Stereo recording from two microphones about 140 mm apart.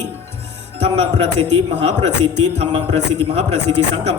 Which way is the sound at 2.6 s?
50° right (ahead or behind).